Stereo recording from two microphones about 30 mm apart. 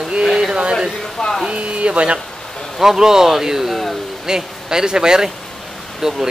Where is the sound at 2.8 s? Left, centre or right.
Centre.